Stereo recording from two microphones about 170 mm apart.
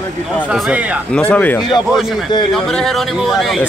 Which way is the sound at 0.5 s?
5° right (ahead or behind).